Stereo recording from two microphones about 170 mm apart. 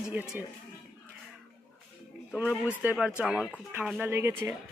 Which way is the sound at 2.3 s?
5° right (ahead or behind).